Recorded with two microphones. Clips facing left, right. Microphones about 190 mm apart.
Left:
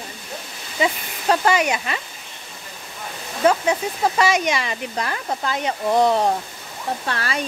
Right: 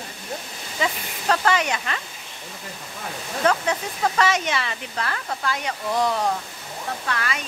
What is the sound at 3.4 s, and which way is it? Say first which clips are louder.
Speech: left 4 dB; 10° left (ahead or behind).